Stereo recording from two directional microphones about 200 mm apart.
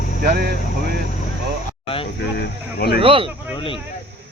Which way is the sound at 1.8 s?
25° left (ahead or behind).